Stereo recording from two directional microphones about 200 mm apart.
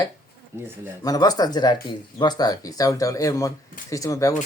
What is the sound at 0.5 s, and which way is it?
Speech, 10° right (ahead or behind).